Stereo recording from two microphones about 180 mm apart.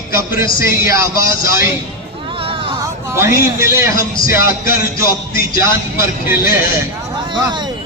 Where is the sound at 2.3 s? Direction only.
30° right (ahead or behind).